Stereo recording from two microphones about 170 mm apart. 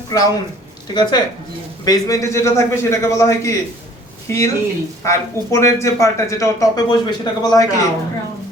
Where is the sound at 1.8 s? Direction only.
20° left (ahead or behind).